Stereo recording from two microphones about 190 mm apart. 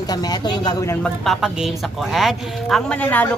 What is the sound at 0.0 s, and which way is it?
Speech, 20° left (ahead or behind).